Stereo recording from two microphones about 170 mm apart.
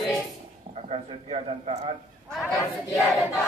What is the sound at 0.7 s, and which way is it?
A man's voice, 35° right (ahead or behind).